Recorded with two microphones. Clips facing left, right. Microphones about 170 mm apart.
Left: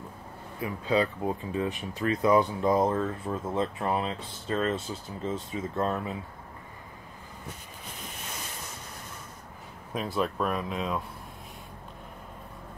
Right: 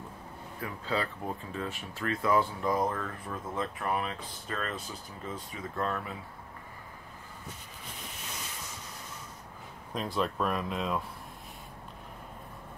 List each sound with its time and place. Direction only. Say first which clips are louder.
0.6 s speech: left 7 dB; 15° left (ahead or behind)
9.9 s speech: left 2 dB; 5° left (ahead or behind)